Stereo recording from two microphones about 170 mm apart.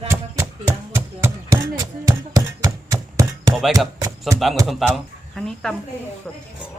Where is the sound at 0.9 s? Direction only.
20° right (ahead or behind).